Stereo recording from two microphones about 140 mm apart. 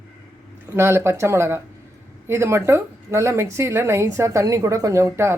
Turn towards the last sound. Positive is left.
turn(degrees=-20)  # may be behind; listen again after turning